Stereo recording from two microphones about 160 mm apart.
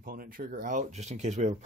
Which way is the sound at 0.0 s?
65° right (ahead or behind).